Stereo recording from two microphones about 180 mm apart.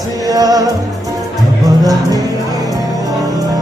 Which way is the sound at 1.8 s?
20° right (ahead or behind).